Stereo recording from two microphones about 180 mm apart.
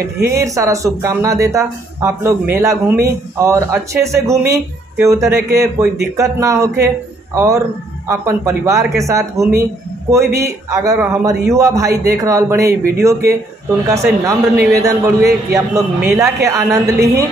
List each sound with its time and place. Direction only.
0.0 s speech: 15° right (ahead or behind)